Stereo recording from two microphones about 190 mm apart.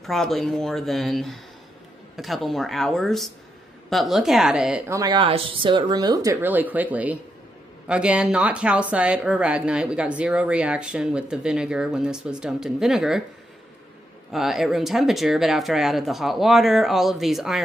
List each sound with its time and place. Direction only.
0.0 s speech: centre (ahead or behind)
4.8 s speech: 20° right (ahead or behind); by 13.2 s centre (ahead or behind)
14.3 s speech: centre (ahead or behind)